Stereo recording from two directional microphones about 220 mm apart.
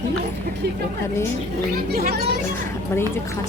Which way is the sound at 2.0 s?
45° right (ahead or behind).